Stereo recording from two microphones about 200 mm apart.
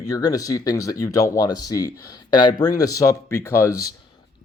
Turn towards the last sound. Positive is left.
turn(degrees=15)  # may be behind; listen again after turning